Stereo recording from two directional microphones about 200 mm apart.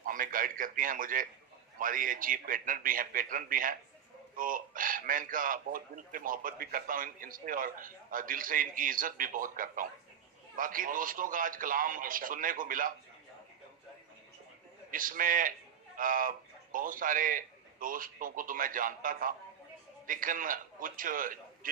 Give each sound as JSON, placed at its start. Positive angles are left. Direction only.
{"t": 0.0, "sound": "speech", "side_deg": -45}
{"t": 14.8, "sound": "a man's voice", "side_deg": -45}